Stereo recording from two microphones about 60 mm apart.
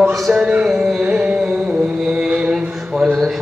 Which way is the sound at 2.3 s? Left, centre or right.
Centre.